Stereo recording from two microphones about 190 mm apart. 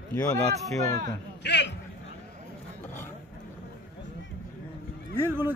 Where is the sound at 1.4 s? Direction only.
65° left (ahead or behind).